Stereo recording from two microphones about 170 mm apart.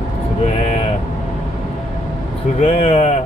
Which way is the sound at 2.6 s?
35° left (ahead or behind).